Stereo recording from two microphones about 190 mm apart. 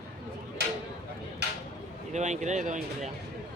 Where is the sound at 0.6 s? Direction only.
60° right (ahead or behind).